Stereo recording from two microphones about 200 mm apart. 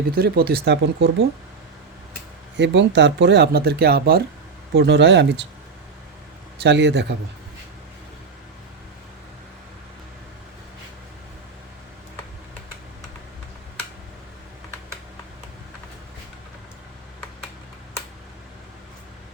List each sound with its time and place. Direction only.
0.1 s speech: 50° right (ahead or behind)
2.6 s speech: 65° right (ahead or behind)
6.6 s speech: 60° right (ahead or behind)